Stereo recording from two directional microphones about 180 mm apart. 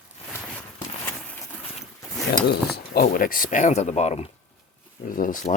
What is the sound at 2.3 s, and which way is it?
Speech, 60° left (ahead or behind).